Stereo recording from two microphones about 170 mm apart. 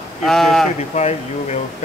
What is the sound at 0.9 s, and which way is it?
Speech, 40° left (ahead or behind).